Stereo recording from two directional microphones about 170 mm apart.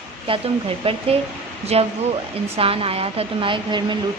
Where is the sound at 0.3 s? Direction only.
35° right (ahead or behind).